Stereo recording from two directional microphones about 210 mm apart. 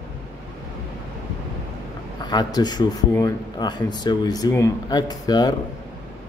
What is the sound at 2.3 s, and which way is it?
A man's voice, 20° left (ahead or behind).